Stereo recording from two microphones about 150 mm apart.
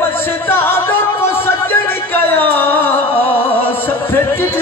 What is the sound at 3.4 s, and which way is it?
Music, 35° left (ahead or behind).